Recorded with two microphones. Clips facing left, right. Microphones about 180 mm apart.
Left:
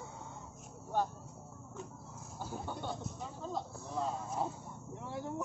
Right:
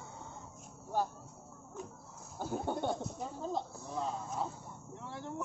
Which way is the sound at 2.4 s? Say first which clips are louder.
Right 6 dB; 55° right (ahead or behind).